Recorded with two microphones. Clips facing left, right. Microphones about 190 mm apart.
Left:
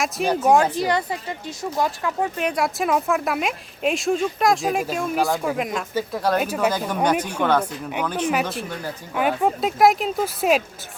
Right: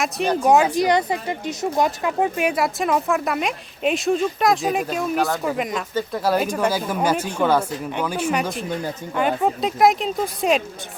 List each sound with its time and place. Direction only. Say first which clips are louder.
0.0 s a woman's voice: right 1 dB; centre (ahead or behind)
0.5 s speech: right 4 dB; 10° right (ahead or behind)
2.4 s a woman's voice: right 2 dB; 5° right (ahead or behind)
9.1 s a woman's voice: even; 5° left (ahead or behind)